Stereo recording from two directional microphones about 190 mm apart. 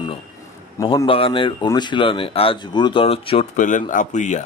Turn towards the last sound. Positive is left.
turn(degrees=40)  # may be behind; listen again after turning